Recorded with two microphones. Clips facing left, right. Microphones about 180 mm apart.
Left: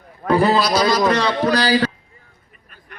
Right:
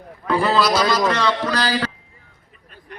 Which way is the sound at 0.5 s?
15° left (ahead or behind).